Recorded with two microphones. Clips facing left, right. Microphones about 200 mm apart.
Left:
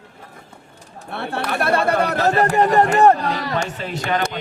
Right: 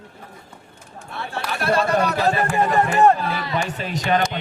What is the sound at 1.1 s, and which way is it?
Speech, 60° left (ahead or behind).